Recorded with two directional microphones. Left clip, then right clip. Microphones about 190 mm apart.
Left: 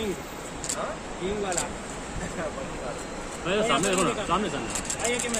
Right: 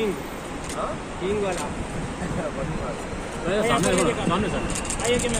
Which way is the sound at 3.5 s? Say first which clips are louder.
Right 2 dB; 50° left (ahead or behind).